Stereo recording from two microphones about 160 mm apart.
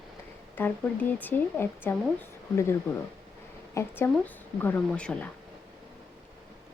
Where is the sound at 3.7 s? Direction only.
10° left (ahead or behind).